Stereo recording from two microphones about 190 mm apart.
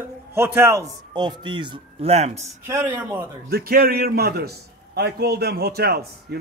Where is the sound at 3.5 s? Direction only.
50° right (ahead or behind).